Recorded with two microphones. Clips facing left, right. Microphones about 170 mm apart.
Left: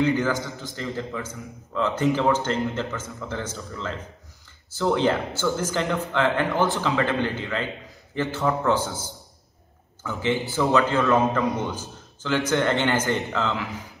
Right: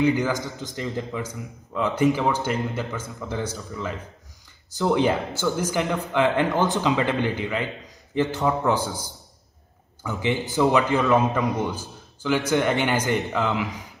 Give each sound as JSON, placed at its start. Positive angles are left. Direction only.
{"t": 0.0, "sound": "a man's voice", "side_deg": -15}